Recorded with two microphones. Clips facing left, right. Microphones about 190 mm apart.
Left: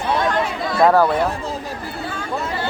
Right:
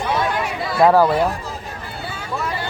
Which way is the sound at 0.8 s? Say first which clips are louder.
Right 1 dB; 5° right (ahead or behind).